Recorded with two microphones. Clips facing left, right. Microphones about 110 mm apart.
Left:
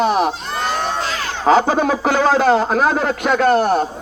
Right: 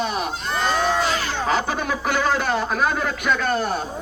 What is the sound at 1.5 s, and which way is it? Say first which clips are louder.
Speech: left 11 dB; 90° left.